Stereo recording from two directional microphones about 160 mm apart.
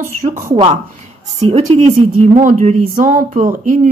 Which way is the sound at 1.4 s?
45° right (ahead or behind).